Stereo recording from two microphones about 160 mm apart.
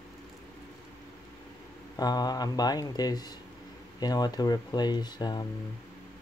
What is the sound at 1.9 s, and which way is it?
Speech, 25° left (ahead or behind).